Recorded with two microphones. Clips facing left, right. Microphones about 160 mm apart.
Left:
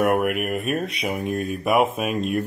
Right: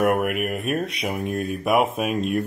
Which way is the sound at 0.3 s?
45° left (ahead or behind).